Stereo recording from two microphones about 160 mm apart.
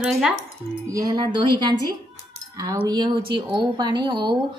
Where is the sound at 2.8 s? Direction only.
30° right (ahead or behind).